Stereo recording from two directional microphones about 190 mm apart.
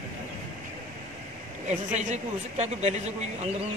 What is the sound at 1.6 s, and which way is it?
Speech, 40° right (ahead or behind).